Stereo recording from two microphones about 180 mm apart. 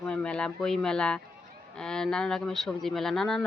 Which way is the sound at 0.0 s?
5° left (ahead or behind).